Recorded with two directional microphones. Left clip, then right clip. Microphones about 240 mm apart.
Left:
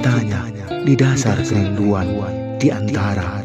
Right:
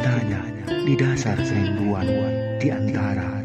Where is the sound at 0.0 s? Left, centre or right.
Left.